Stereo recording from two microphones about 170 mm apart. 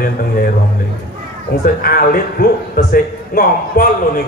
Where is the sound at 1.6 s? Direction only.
60° left (ahead or behind).